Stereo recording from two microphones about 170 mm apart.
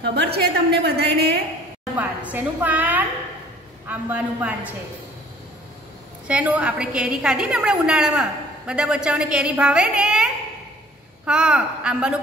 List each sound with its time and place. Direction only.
0.0 s a woman's voice: 75° right (ahead or behind)
2.0 s a woman's voice: 10° right (ahead or behind)
6.2 s a woman's voice: 5° right (ahead or behind)